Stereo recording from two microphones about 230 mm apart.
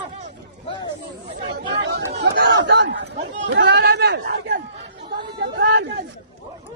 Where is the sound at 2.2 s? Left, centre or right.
Right.